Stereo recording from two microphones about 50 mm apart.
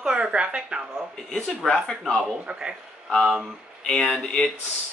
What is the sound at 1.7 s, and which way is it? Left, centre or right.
Speech, centre.